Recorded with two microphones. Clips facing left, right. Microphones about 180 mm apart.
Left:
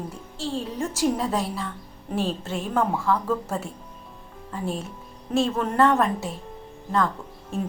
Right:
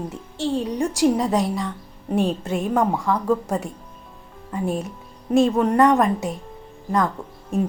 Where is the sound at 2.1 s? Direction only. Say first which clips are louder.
Right 5 dB; centre (ahead or behind).